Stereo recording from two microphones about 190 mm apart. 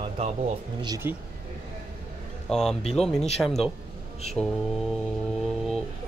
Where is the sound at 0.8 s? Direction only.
15° right (ahead or behind).